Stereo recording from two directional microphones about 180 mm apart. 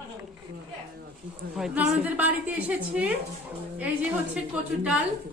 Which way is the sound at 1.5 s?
5° right (ahead or behind).